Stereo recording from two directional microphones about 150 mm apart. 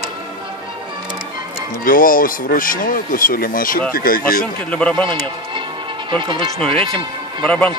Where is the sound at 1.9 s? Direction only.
70° left (ahead or behind).